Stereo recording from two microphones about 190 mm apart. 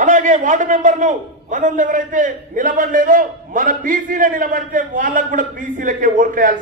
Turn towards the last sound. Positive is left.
turn(degrees=-45)  # may be behind; listen again after turning